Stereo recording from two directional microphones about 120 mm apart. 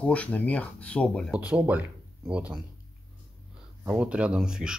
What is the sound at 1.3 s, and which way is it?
Speech, 10° right (ahead or behind).